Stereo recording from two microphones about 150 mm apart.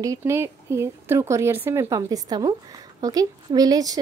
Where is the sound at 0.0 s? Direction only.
20° right (ahead or behind).